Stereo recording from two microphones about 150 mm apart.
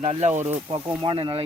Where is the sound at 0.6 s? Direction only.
35° right (ahead or behind).